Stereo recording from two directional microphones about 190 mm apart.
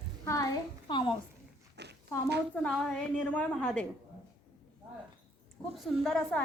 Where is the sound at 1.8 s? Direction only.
60° right (ahead or behind).